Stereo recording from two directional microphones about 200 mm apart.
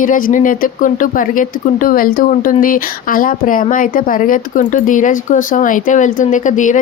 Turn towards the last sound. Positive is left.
turn(degrees=40)  # may be behind; listen again after turning